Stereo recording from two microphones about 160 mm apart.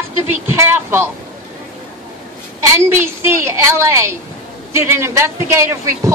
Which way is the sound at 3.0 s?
15° right (ahead or behind).